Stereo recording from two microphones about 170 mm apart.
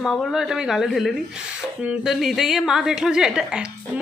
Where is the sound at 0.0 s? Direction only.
5° left (ahead or behind).